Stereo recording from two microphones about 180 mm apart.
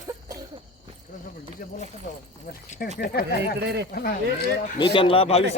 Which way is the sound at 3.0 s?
65° left (ahead or behind).